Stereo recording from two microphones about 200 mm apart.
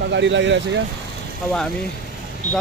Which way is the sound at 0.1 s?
65° right (ahead or behind).